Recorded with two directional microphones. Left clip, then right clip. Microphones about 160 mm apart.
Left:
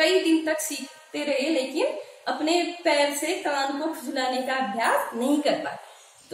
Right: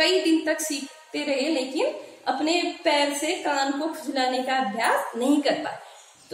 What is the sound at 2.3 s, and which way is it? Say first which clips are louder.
A woman's voice: right 1 dB; 25° right (ahead or behind).